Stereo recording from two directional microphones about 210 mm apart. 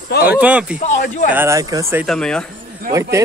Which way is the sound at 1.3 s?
10° right (ahead or behind).